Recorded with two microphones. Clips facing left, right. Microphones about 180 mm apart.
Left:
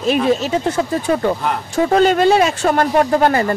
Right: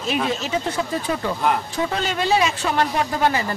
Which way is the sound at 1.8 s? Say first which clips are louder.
Left 13 dB; 50° left (ahead or behind).